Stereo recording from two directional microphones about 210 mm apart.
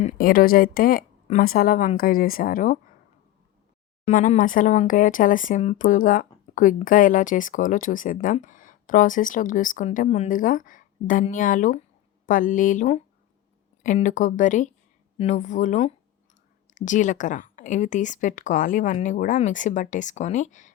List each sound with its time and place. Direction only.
0.0 s speech: 40° left (ahead or behind)
4.0 s speech: 35° left (ahead or behind)